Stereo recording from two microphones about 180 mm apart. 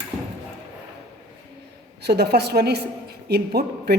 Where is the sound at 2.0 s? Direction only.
65° right (ahead or behind).